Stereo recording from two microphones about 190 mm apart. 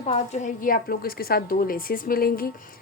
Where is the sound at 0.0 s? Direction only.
35° left (ahead or behind).